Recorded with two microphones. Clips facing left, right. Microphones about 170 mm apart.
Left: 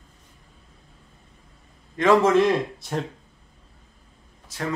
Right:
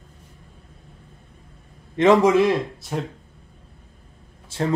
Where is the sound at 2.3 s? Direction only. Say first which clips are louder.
Right 1 dB; 5° right (ahead or behind).